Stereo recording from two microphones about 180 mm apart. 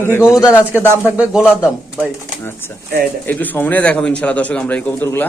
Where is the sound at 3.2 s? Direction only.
10° left (ahead or behind).